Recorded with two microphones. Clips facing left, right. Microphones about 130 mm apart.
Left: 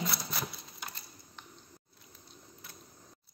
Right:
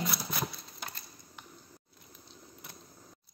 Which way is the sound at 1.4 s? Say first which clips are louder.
Right 1 dB; 10° right (ahead or behind).